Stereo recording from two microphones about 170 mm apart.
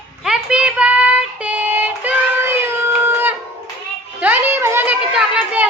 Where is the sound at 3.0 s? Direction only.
10° right (ahead or behind).